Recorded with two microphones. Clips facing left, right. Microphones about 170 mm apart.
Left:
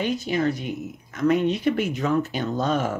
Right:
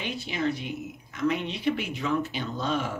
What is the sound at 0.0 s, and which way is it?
Speech, 45° left (ahead or behind).